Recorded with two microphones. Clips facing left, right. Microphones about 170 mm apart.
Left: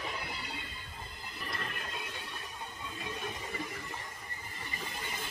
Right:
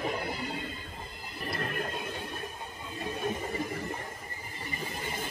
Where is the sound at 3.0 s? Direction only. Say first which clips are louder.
Right 8 dB; 45° right (ahead or behind).